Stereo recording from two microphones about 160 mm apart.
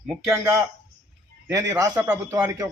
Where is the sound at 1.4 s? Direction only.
20° right (ahead or behind).